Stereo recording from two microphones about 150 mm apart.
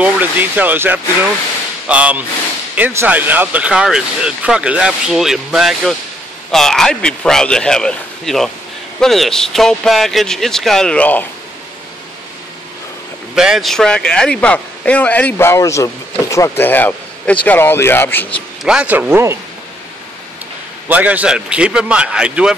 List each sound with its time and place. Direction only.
0.0 s a man's voice: 10° right (ahead or behind); by 11.2 s 10° left (ahead or behind)
13.3 s speech: 5° right (ahead or behind); by 18.4 s 10° left (ahead or behind)
18.6 s a man's voice: 5° right (ahead or behind)
20.9 s a man's voice: 10° right (ahead or behind)